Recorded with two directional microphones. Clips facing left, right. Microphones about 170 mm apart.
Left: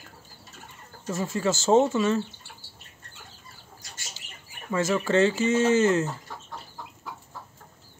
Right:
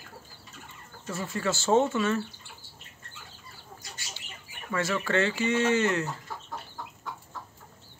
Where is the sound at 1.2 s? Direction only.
20° left (ahead or behind).